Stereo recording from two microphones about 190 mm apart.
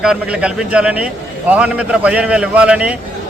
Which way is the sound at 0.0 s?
5° right (ahead or behind).